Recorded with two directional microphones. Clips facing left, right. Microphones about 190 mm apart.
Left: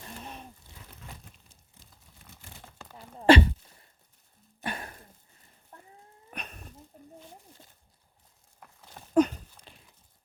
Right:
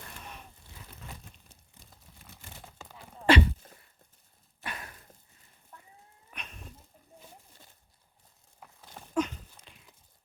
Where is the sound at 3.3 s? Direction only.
30° left (ahead or behind).